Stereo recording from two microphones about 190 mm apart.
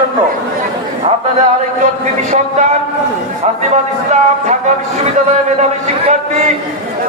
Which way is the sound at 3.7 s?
35° right (ahead or behind).